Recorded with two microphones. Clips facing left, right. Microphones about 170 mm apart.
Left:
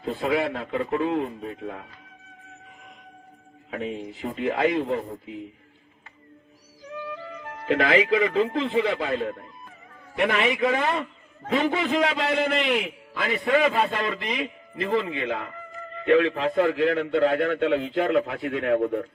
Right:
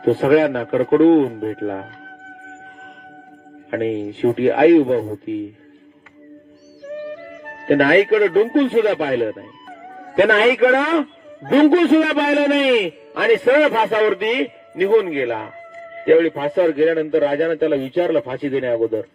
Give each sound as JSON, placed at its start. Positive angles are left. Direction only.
{"t": 0.0, "sound": "a man's voice", "side_deg": -80}
{"t": 3.7, "sound": "a man's voice", "side_deg": -70}
{"t": 6.9, "sound": "speech", "side_deg": -55}
{"t": 10.1, "sound": "a man's voice", "side_deg": -80}
{"t": 16.0, "sound": "a man's voice", "side_deg": -40}